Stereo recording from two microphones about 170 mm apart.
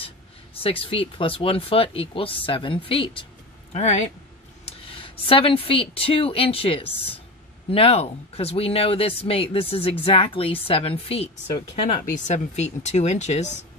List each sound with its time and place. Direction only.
0.6 s speech: 35° left (ahead or behind)
3.7 s speech: 45° left (ahead or behind)
4.6 s speech: 30° left (ahead or behind)
11.5 s speech: 45° left (ahead or behind)